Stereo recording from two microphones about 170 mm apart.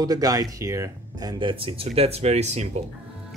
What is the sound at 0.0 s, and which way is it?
Speech, 20° right (ahead or behind).